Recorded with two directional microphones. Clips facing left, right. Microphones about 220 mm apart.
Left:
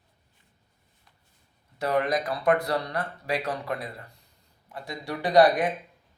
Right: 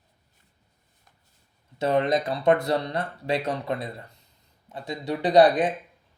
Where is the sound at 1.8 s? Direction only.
25° right (ahead or behind).